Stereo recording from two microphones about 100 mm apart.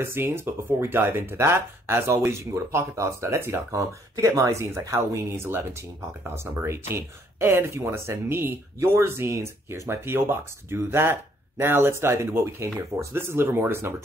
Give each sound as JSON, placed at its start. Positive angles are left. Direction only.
{"t": 0.0, "sound": "speech", "side_deg": -25}